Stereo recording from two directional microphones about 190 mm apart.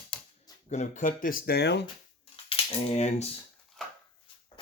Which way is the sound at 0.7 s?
40° left (ahead or behind).